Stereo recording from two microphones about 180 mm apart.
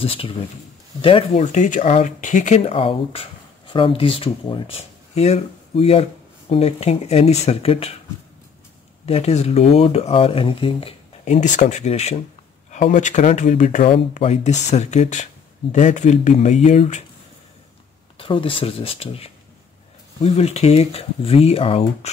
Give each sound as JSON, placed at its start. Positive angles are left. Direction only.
{"t": 0.0, "sound": "speech", "side_deg": 30}
{"t": 9.0, "sound": "speech", "side_deg": 35}
{"t": 18.1, "sound": "speech", "side_deg": 30}